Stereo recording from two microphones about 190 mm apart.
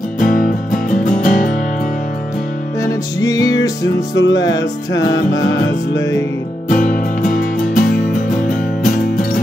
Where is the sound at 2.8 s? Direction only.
20° left (ahead or behind).